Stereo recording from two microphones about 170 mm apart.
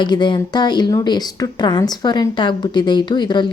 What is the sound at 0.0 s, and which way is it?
A woman's voice, 25° left (ahead or behind).